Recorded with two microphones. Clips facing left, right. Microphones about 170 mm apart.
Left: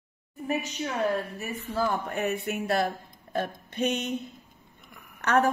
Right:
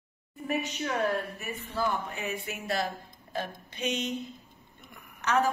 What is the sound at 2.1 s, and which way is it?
Speech, 60° left (ahead or behind).